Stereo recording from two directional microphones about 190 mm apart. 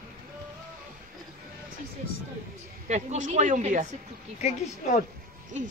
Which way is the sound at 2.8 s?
40° right (ahead or behind).